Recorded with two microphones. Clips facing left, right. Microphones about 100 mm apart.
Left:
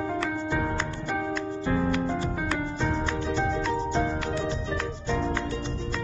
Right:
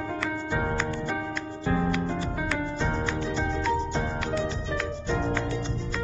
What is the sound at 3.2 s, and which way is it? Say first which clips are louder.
Music: left 2 dB; centre (ahead or behind).